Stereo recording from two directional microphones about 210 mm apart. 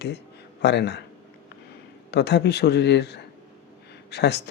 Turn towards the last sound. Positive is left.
turn(degrees=50)  # may be behind; listen again after turning